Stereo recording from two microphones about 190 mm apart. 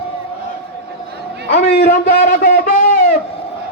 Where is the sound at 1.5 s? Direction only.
55° left (ahead or behind).